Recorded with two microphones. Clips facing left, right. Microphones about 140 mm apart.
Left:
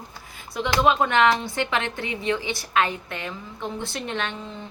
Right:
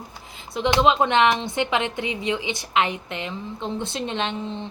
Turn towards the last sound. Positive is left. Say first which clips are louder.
# right 3 dB
turn(degrees=-20)  # may be behind; listen again after turning